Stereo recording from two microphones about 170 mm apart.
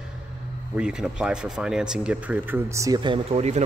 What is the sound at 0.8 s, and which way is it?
Speech, 5° right (ahead or behind).